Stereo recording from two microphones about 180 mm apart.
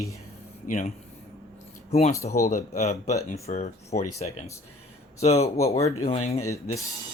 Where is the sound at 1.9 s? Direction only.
35° left (ahead or behind).